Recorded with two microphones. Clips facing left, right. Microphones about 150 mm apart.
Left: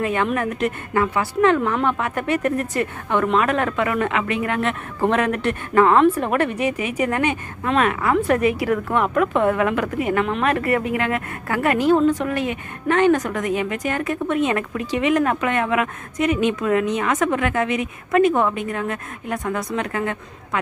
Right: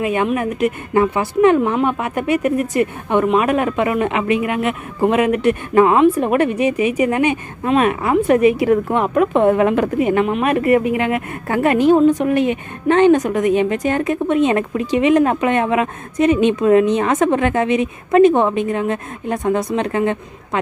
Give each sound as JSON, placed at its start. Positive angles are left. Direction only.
{"t": 0.0, "sound": "a woman's voice", "side_deg": -15}